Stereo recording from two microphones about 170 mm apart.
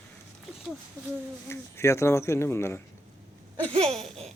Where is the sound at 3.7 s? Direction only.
35° right (ahead or behind).